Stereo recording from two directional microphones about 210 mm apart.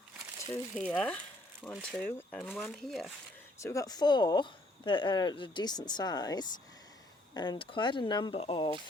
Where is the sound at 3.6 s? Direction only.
15° left (ahead or behind).